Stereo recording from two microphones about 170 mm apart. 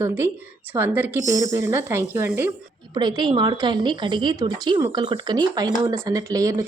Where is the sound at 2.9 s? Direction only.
25° right (ahead or behind).